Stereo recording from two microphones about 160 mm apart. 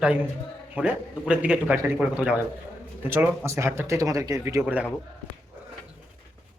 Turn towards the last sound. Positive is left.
turn(degrees=-10)  # may be behind; listen again after turning